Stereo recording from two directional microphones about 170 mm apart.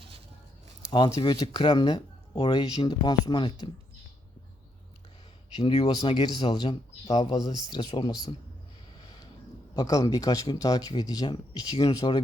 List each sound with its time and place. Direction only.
0.8 s speech: 25° left (ahead or behind)
5.5 s speech: 30° left (ahead or behind)
9.7 s speech: 20° left (ahead or behind)